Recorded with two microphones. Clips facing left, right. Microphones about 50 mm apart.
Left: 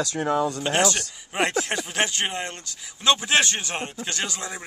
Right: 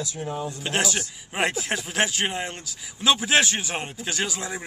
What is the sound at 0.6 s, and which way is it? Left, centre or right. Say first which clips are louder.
Speech: left 3 dB; centre.